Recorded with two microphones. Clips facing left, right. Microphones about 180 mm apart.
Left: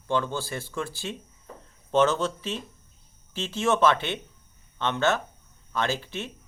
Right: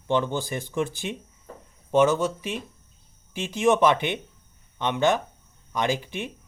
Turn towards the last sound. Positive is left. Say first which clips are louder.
# right 3 dB
turn(degrees=-15)  # may be behind; listen again after turning